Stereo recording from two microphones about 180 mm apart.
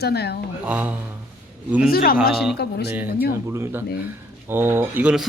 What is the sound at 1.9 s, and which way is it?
Speech, 55° left (ahead or behind).